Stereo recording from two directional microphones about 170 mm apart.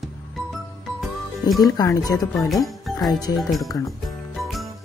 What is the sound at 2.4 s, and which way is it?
Speech, centre (ahead or behind).